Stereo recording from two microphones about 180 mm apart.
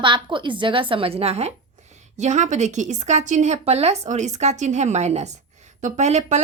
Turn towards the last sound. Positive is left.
turn(degrees=-40)  # may be behind; listen again after turning